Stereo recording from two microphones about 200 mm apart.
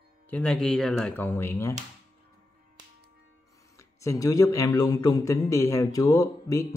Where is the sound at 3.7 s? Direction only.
15° left (ahead or behind).